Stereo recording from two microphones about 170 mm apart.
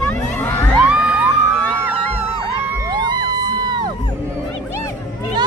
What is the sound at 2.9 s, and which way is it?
Crowd, 25° right (ahead or behind).